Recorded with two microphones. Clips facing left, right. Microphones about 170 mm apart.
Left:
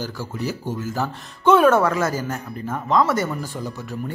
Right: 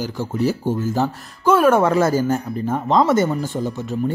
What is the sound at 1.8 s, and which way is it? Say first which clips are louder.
Speech: right 5 dB; 30° right (ahead or behind).